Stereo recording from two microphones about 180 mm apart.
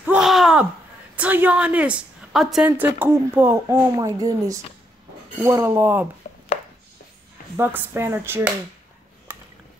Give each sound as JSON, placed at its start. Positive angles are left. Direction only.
{"t": 0.0, "sound": "a sound", "side_deg": -5}
{"t": 1.1, "sound": "a woman's voice", "side_deg": -10}
{"t": 6.2, "sound": "chopping", "side_deg": 45}
{"t": 7.5, "sound": "a woman's voice", "side_deg": -10}